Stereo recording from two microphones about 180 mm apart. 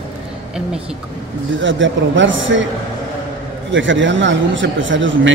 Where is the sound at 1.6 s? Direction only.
90° right.